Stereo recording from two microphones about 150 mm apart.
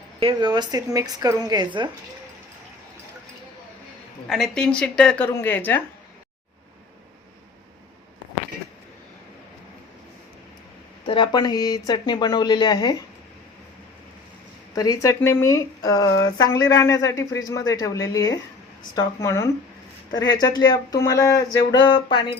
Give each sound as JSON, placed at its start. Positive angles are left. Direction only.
{"t": 0.2, "sound": "a woman's voice", "side_deg": -30}
{"t": 4.3, "sound": "a woman's voice", "side_deg": 0}
{"t": 11.0, "sound": "speech", "side_deg": 30}
{"t": 14.8, "sound": "speech", "side_deg": 25}